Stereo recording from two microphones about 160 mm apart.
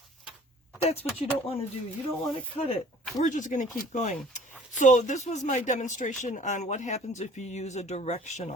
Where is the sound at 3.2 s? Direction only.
55° left (ahead or behind).